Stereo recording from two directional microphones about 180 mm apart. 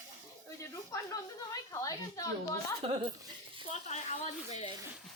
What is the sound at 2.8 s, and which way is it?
Speech, 30° right (ahead or behind).